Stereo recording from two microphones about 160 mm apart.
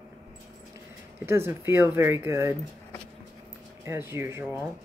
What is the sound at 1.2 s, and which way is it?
Speech, 15° right (ahead or behind).